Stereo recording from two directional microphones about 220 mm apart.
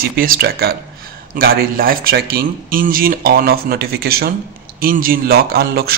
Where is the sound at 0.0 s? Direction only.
40° right (ahead or behind).